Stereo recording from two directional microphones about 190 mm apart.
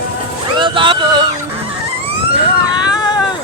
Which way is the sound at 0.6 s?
25° right (ahead or behind).